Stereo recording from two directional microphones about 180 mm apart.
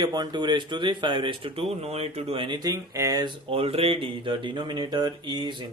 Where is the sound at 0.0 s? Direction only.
25° right (ahead or behind).